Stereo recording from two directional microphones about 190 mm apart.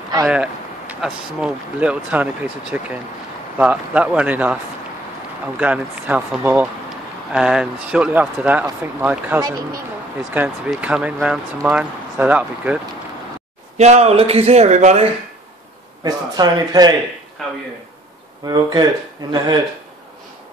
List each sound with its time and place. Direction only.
0.3 s speech: 5° right (ahead or behind)
5.6 s speech: 5° right (ahead or behind)
13.7 s speech: 35° right (ahead or behind)
16.0 s speech: 20° right (ahead or behind)
17.4 s speech: centre (ahead or behind)
18.4 s speech: 20° right (ahead or behind)